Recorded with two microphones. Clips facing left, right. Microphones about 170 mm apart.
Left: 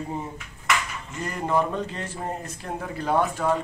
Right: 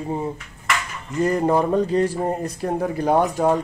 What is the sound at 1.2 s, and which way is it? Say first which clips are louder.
Speech: right 7 dB; 35° right (ahead or behind).